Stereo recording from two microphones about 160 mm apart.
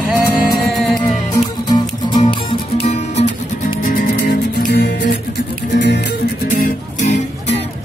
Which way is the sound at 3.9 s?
70° left (ahead or behind).